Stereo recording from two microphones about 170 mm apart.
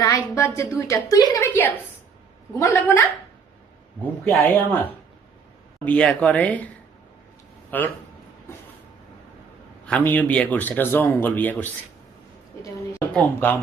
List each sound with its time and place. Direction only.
0.0 s speech: 15° left (ahead or behind)
4.0 s speech: 10° left (ahead or behind)
7.7 s speech: 10° left (ahead or behind)
9.8 s speech: 10° left (ahead or behind)
13.0 s speech: 10° left (ahead or behind)